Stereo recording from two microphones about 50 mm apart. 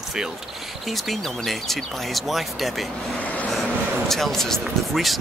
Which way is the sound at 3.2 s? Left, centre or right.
Left.